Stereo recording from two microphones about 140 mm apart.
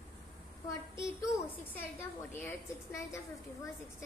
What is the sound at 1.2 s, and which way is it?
A woman's voice, 15° left (ahead or behind).